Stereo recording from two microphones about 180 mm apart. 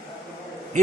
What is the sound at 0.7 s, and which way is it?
Speech, 40° right (ahead or behind).